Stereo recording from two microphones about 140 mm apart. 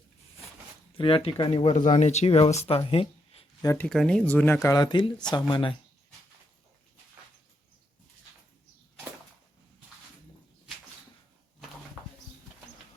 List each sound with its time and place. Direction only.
0.9 s speech: 40° left (ahead or behind)
1.7 s speech: 55° left (ahead or behind)
3.6 s speech: 20° left (ahead or behind)
3.8 s speech: 5° left (ahead or behind); by 5.7 s 35° left (ahead or behind)